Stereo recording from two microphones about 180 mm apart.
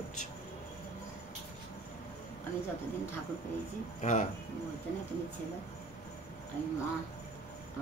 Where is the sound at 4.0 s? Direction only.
40° left (ahead or behind).